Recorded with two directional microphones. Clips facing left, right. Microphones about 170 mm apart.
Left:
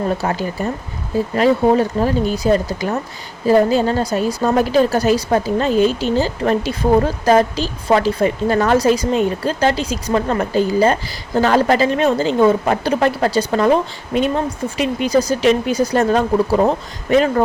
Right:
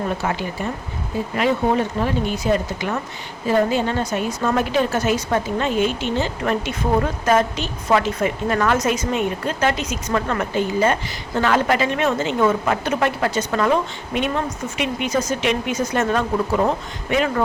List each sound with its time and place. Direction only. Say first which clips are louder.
0.2 s a woman's voice: left 4 dB; 40° left (ahead or behind)